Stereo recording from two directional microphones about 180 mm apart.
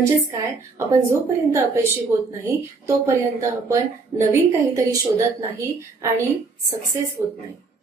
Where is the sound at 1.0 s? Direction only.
15° right (ahead or behind).